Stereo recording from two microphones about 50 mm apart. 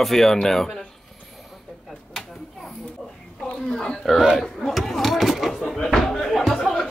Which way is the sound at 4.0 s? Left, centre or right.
Centre.